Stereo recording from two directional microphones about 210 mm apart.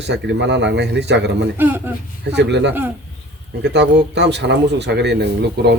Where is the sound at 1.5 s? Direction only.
10° right (ahead or behind).